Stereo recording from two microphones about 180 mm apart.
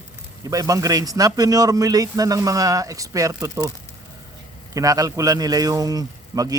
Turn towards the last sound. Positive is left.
turn(degrees=-20)  # may be behind; listen again after turning